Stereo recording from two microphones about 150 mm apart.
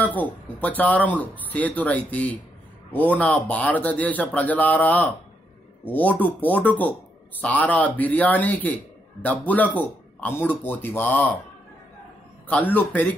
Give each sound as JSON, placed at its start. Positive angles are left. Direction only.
{"t": 0.0, "sound": "speech", "side_deg": 10}